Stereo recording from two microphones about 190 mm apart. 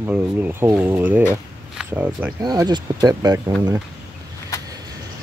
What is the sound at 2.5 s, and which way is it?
Speech, 20° right (ahead or behind).